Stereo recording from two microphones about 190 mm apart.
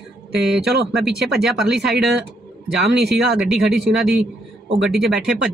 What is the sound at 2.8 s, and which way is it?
Speech, 60° right (ahead or behind).